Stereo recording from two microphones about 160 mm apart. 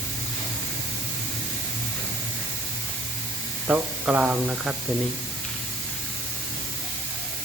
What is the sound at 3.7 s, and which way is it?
Speech, 10° right (ahead or behind).